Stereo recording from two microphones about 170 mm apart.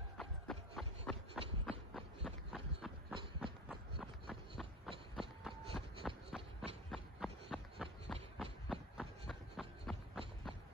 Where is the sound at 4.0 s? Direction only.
Centre (ahead or behind).